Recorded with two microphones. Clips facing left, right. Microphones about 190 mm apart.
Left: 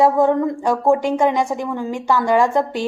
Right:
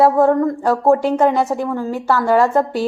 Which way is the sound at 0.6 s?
15° left (ahead or behind).